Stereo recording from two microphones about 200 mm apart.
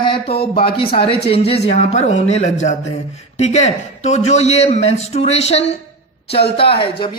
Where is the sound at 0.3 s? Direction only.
50° left (ahead or behind).